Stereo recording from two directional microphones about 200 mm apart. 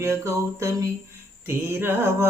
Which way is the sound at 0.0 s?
15° right (ahead or behind).